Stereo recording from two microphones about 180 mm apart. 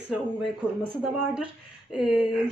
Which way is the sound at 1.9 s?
5° right (ahead or behind).